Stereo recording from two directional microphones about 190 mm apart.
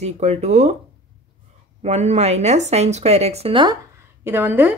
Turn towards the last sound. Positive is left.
turn(degrees=-10)  # may be behind; listen again after turning